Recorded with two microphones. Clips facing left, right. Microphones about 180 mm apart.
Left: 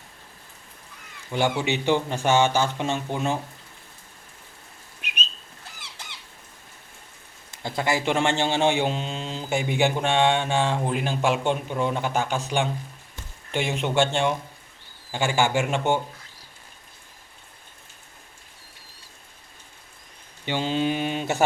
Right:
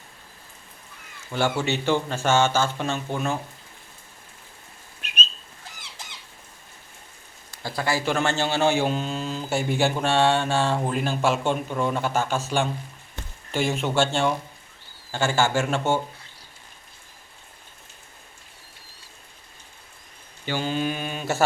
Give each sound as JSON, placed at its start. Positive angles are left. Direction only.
{"t": 1.3, "sound": "speech", "side_deg": 15}
{"t": 4.9, "sound": "whistling", "side_deg": 15}
{"t": 7.5, "sound": "a man's voice", "side_deg": 20}
{"t": 13.8, "sound": "speech", "side_deg": 15}
{"t": 20.4, "sound": "a man's voice", "side_deg": 20}